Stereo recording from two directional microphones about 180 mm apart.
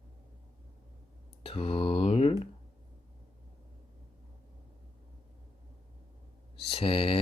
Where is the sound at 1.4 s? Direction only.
30° left (ahead or behind).